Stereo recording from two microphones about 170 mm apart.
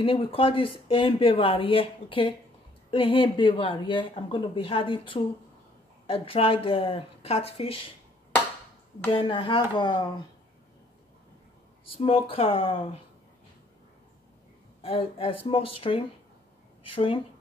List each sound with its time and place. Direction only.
0.0 s speech: 30° left (ahead or behind)
9.1 s speech: 30° left (ahead or behind)
12.0 s speech: 35° left (ahead or behind)
14.8 s speech: 35° left (ahead or behind)